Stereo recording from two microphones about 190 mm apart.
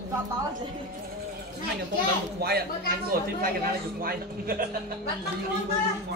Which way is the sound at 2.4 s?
55° right (ahead or behind).